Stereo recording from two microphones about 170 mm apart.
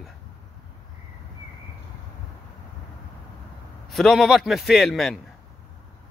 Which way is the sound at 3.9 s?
Centre (ahead or behind).